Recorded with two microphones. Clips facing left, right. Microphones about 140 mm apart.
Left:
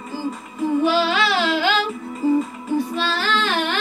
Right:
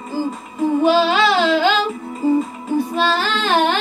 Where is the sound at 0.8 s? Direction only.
20° right (ahead or behind).